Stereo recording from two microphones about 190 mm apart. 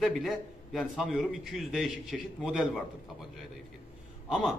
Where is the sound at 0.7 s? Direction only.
Centre (ahead or behind).